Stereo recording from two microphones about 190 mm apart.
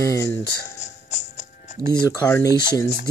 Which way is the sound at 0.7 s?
35° left (ahead or behind).